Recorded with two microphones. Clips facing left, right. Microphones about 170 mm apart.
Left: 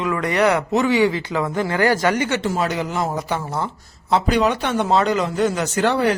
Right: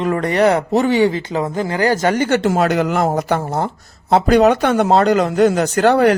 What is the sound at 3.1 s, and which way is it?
Speech, 50° right (ahead or behind).